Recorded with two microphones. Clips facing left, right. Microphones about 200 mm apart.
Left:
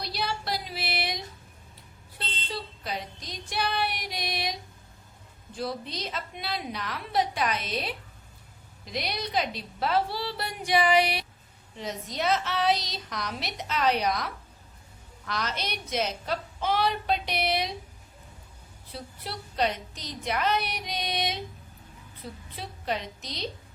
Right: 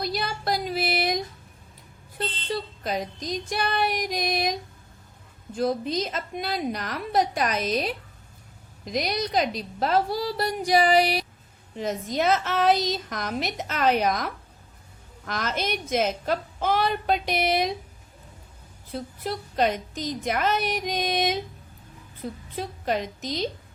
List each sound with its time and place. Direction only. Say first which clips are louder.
0.0 s a sound: right 4 dB; 45° right (ahead or behind)
5.5 s a woman's voice: right 8 dB; 45° right (ahead or behind)
11.8 s a woman's voice: right 6 dB; 50° right (ahead or behind)
18.9 s a woman's voice: right 8 dB; 45° right (ahead or behind)
22.5 s a woman's voice: right 5 dB; 45° right (ahead or behind)